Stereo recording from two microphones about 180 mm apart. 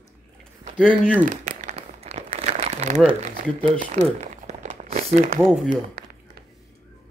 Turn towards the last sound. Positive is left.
turn(degrees=5)  # may be behind; listen again after turning